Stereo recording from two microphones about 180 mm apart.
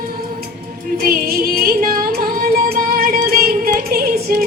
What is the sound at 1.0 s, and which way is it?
Music, 55° right (ahead or behind).